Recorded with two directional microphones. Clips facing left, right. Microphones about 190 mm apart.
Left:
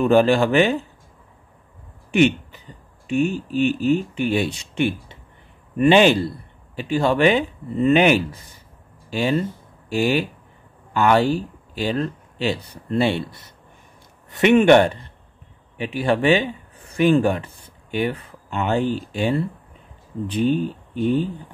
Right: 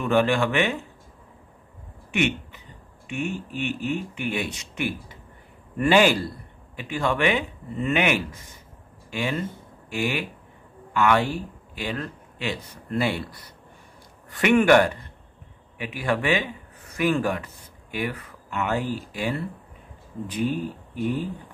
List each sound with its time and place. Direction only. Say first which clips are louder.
0.0 s speech: left 6 dB; 30° left (ahead or behind)
2.0 s a sound: left 8 dB; 35° left (ahead or behind)
3.1 s speech: left 9 dB; 35° left (ahead or behind)